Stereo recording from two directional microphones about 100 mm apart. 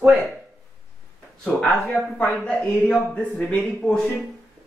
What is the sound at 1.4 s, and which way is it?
Speech, 10° left (ahead or behind).